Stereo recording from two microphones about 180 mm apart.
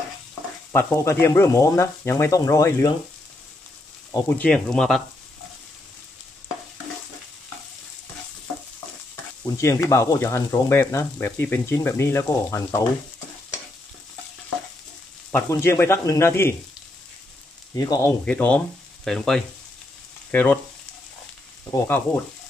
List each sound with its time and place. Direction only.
0.7 s speech: 15° left (ahead or behind)
4.1 s speech: 10° left (ahead or behind)
9.4 s speech: 15° left (ahead or behind)
15.3 s speech: 15° left (ahead or behind)
17.7 s speech: 20° left (ahead or behind)
18.2 s speech: 5° left (ahead or behind)
20.2 s frying: 10° left (ahead or behind)
21.6 s speech: 10° left (ahead or behind)